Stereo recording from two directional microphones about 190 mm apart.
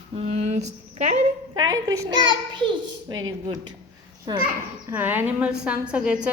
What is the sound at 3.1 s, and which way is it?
Speech, 90° right.